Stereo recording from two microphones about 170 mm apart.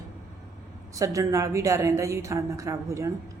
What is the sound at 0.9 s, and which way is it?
A woman's voice, 20° right (ahead or behind).